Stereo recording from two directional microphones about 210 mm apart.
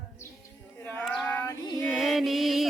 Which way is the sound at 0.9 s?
5° left (ahead or behind).